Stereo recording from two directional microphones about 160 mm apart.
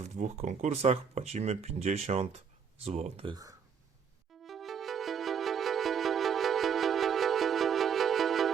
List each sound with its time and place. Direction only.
0.0 s speech: 45° right (ahead or behind)
3.2 s speech: 25° right (ahead or behind)
4.4 s music: centre (ahead or behind)